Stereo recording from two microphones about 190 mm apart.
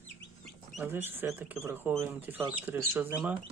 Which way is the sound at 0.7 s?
10° right (ahead or behind).